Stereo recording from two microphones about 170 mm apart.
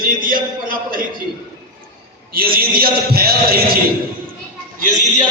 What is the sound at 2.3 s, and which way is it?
Speech, 60° right (ahead or behind).